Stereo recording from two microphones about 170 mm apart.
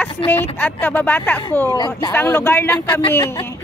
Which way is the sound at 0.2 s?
30° left (ahead or behind).